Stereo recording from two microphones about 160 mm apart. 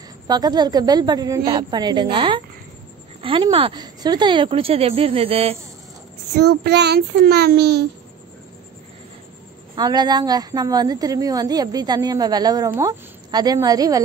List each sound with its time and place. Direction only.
0.3 s a woman's voice: 25° right (ahead or behind)
3.2 s a sound: 35° right (ahead or behind)
3.4 s speech: 30° right (ahead or behind)
6.3 s child singing: 90° right
9.8 s a woman's voice: 25° right (ahead or behind)